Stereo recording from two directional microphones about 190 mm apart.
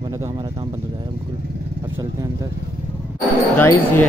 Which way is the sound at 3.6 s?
10° left (ahead or behind).